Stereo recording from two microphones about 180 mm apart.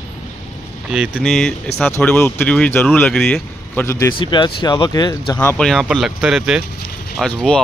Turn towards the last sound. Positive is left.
turn(degrees=5)  # may be behind; listen again after turning